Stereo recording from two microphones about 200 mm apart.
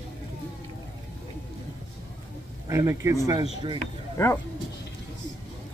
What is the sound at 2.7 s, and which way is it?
Speech, 15° right (ahead or behind).